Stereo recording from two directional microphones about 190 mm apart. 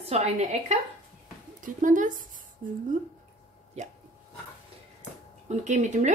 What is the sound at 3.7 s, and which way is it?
Speech, 35° right (ahead or behind).